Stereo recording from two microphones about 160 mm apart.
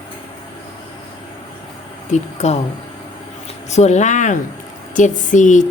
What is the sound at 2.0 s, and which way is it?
Speech, 45° left (ahead or behind).